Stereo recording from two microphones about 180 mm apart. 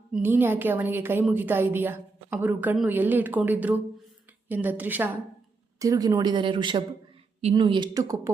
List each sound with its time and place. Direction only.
0.1 s a woman's voice: 10° right (ahead or behind)